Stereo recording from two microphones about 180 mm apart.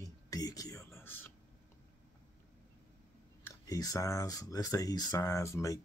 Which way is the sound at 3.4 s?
20° left (ahead or behind).